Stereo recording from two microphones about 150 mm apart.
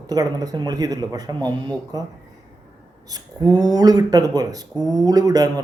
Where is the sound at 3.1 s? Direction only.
25° right (ahead or behind).